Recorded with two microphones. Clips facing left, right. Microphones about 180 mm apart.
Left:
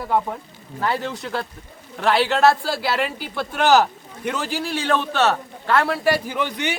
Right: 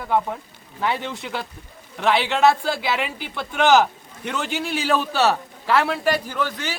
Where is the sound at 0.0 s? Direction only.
Centre (ahead or behind).